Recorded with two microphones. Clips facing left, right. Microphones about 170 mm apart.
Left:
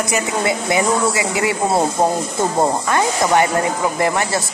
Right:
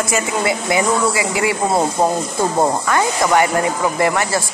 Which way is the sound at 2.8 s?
20° left (ahead or behind).